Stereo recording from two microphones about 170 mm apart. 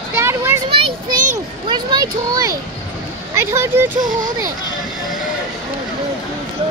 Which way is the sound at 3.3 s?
15° right (ahead or behind).